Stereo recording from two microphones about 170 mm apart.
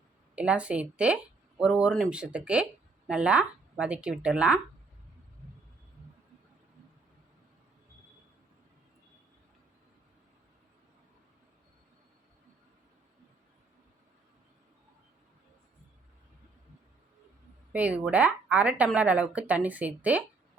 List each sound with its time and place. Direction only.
0.3 s speech: 5° right (ahead or behind)
17.7 s speech: 5° right (ahead or behind)